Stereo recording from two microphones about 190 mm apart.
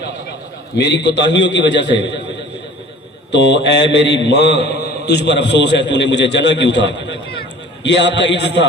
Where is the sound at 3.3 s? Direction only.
70° left (ahead or behind).